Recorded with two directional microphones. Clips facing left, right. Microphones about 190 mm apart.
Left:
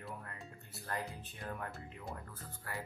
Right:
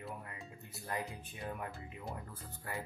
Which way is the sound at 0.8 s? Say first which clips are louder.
Right 1 dB; 15° right (ahead or behind).